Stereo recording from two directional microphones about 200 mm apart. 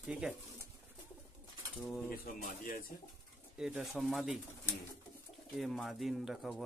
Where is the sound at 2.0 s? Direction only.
45° left (ahead or behind).